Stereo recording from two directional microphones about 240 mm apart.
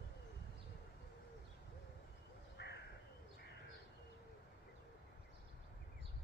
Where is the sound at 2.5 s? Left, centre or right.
Left.